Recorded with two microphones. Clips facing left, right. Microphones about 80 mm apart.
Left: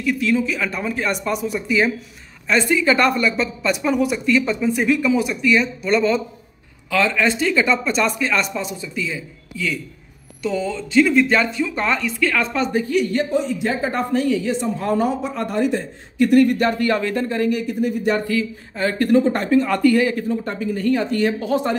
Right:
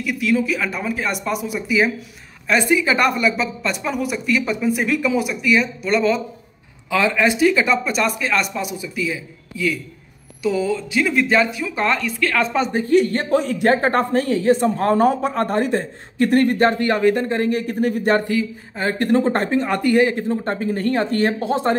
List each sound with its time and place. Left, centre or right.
0.0 s speech: centre
6.9 s speech: centre
12.8 s speech: right
16.8 s speech: right
18.2 s speech: right
19.2 s speech: right
19.5 s speech: right